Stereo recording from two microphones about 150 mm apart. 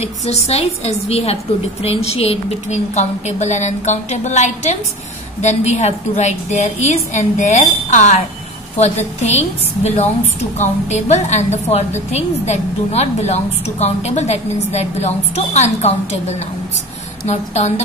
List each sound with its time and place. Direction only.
0.0 s a woman's voice: 45° left (ahead or behind)
10.6 s a woman's voice: 50° left (ahead or behind)